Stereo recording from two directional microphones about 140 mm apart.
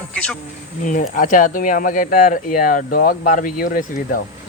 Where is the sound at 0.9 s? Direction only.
70° left (ahead or behind).